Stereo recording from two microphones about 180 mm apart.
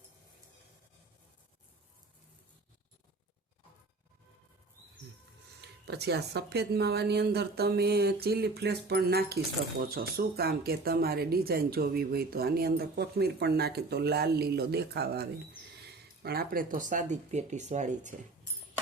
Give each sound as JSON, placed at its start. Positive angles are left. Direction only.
{"t": 5.8, "sound": "speech", "side_deg": -65}